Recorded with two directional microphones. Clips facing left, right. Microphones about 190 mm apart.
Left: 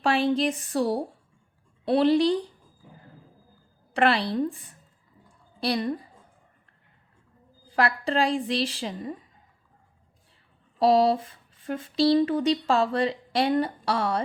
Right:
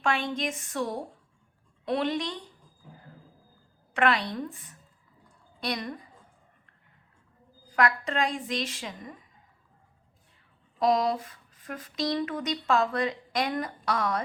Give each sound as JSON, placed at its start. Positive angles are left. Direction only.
{"t": 0.0, "sound": "speech", "side_deg": 35}
{"t": 3.9, "sound": "a woman's voice", "side_deg": 30}
{"t": 7.8, "sound": "speech", "side_deg": 30}
{"t": 10.8, "sound": "speech", "side_deg": 30}